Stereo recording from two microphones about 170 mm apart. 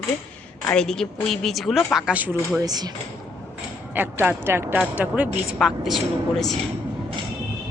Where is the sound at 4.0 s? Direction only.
10° right (ahead or behind).